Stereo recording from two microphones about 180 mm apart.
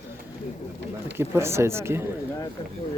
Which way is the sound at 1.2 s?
15° right (ahead or behind).